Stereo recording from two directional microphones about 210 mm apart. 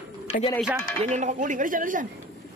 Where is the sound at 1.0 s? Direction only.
35° right (ahead or behind).